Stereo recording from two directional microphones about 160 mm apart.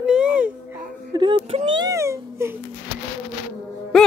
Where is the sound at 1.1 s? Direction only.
30° right (ahead or behind).